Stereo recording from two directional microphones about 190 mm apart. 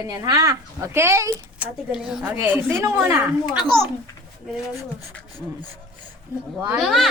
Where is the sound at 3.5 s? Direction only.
Centre (ahead or behind).